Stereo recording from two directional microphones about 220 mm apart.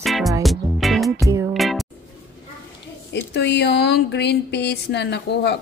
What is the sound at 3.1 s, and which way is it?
Speech, 50° left (ahead or behind).